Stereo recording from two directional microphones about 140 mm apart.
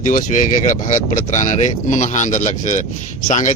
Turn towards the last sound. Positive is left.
turn(degrees=60)  # may be behind; listen again after turning